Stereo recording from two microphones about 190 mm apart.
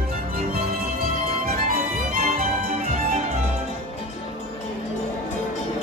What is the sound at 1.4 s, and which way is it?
Music, 50° right (ahead or behind).